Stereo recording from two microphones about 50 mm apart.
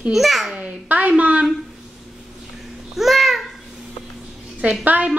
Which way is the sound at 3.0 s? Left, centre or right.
Centre.